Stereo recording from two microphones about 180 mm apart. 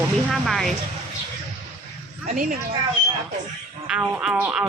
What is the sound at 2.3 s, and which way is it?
Speech, 50° right (ahead or behind).